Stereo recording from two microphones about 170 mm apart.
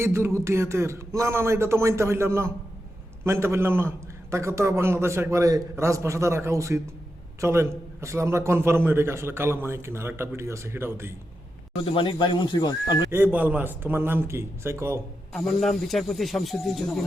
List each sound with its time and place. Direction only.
0.0 s a man's voice: 15° right (ahead or behind)
11.9 s speech: 30° left (ahead or behind)
13.1 s a man's voice: 10° right (ahead or behind)
15.3 s speech: centre (ahead or behind)